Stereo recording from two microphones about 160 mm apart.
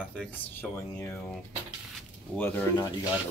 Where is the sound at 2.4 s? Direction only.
10° left (ahead or behind).